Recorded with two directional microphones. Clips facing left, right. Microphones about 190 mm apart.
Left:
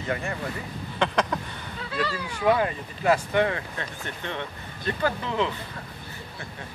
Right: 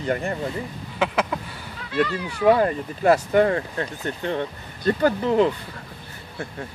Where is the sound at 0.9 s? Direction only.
5° right (ahead or behind).